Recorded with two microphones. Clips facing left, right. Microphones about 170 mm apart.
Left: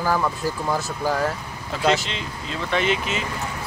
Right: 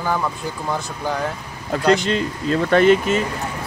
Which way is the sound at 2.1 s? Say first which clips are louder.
Right 11 dB; 45° right (ahead or behind).